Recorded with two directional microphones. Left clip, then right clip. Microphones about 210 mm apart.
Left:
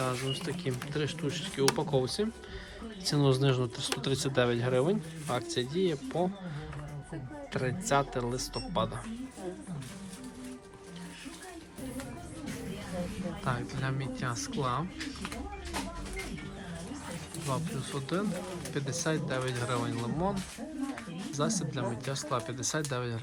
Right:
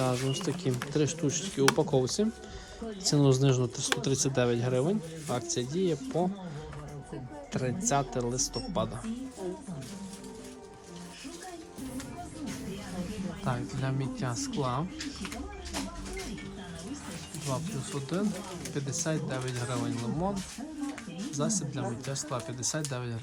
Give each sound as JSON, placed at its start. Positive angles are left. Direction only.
{"t": 0.0, "sound": "speech", "side_deg": -25}
{"t": 7.5, "sound": "speech", "side_deg": -20}
{"t": 13.4, "sound": "speech", "side_deg": -20}
{"t": 17.5, "sound": "speech", "side_deg": -20}
{"t": 21.3, "sound": "speech", "side_deg": -15}